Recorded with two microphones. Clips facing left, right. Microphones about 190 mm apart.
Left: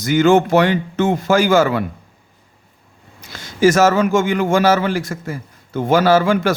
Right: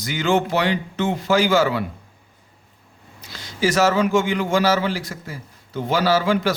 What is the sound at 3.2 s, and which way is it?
A man's voice, 50° left (ahead or behind).